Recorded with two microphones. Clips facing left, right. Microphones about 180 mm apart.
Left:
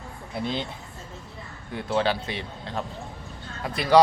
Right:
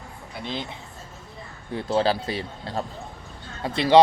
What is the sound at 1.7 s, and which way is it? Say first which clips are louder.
Speech: right 2 dB; 35° right (ahead or behind).